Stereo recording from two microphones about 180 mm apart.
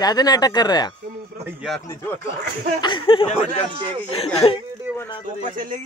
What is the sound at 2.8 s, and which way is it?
Speech, 30° left (ahead or behind).